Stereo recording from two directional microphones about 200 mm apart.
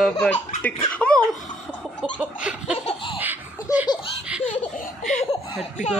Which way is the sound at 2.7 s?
30° left (ahead or behind).